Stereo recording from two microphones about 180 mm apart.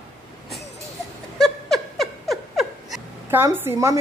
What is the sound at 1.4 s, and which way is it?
Laughter, centre (ahead or behind).